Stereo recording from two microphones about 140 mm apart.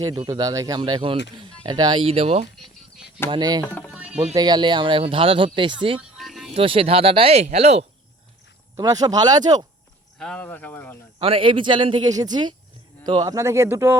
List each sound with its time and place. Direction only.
0.0 s speech: 30° right (ahead or behind); by 2.5 s 45° right (ahead or behind)
3.2 s speech: 30° right (ahead or behind)
3.6 s speech: 15° left (ahead or behind)
3.9 s music: 10° right (ahead or behind)
4.4 s speech: 30° right (ahead or behind)
6.0 s a sound: centre (ahead or behind)
6.5 s speech: 40° right (ahead or behind)
8.7 s speech: 25° right (ahead or behind)
10.2 s speech: 5° left (ahead or behind)
11.2 s speech: 40° right (ahead or behind); by 13.9 s 20° right (ahead or behind)